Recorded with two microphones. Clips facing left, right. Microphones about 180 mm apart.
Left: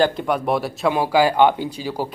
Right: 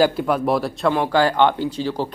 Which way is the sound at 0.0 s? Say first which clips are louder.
Right 1 dB; centre (ahead or behind).